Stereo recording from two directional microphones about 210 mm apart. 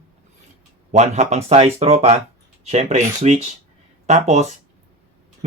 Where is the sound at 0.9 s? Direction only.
35° right (ahead or behind).